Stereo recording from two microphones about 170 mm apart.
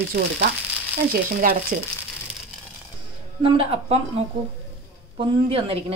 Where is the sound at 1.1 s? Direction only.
60° right (ahead or behind).